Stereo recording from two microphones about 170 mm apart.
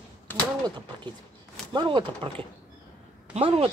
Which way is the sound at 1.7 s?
30° right (ahead or behind).